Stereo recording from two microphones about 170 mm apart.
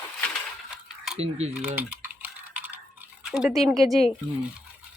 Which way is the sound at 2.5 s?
10° right (ahead or behind).